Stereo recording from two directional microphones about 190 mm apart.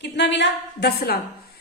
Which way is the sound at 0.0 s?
65° left (ahead or behind).